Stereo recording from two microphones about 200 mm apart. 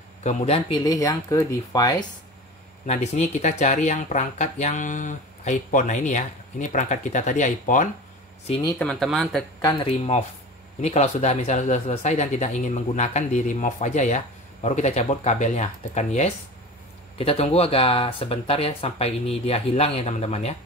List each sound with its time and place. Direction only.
0.2 s speech: 35° left (ahead or behind)
0.7 s speech: 20° left (ahead or behind)
2.9 s speech: 35° left (ahead or behind)
8.5 s speech: 25° left (ahead or behind)
8.7 s speech: 5° left (ahead or behind)
9.6 s speech: 20° left (ahead or behind)